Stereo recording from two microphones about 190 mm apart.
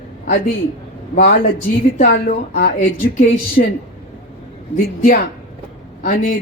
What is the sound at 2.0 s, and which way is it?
Speech, 55° left (ahead or behind).